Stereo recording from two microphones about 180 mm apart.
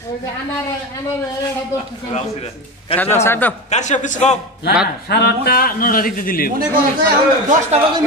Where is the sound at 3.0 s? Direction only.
15° left (ahead or behind).